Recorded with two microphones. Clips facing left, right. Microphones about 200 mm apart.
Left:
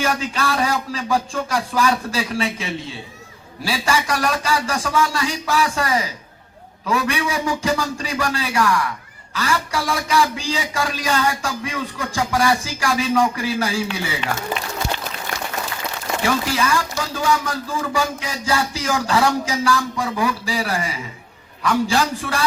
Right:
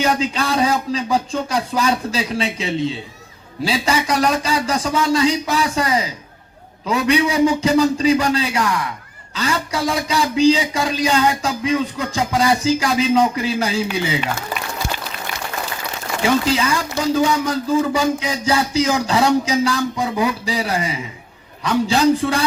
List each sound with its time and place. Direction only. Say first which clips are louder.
0.0 s a man's voice: right 3 dB; 20° right (ahead or behind)
16.2 s a man's voice: right 4 dB; 20° right (ahead or behind)